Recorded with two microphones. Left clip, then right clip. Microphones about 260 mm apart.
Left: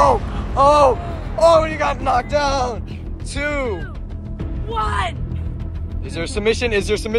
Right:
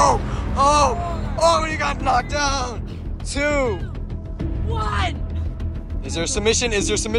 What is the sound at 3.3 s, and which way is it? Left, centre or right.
Speech, right.